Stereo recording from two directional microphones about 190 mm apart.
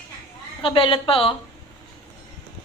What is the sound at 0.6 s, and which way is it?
Speech, 25° left (ahead or behind).